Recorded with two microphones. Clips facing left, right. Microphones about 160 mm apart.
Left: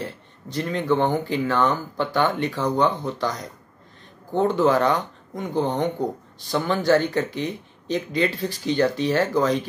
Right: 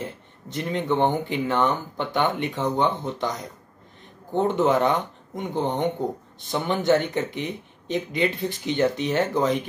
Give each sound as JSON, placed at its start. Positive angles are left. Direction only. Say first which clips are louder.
{"t": 0.0, "sound": "speech", "louder": "left 1 dB", "side_deg": -20}